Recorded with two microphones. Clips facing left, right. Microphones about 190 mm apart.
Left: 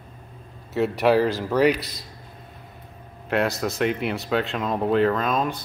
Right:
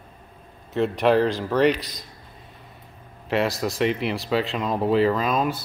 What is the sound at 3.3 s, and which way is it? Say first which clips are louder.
Speech: even; centre (ahead or behind).